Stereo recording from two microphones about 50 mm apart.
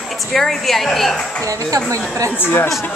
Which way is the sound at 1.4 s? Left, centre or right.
Right.